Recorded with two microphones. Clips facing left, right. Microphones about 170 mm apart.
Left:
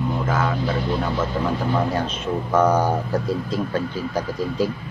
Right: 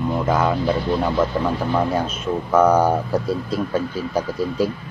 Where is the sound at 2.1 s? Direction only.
10° right (ahead or behind).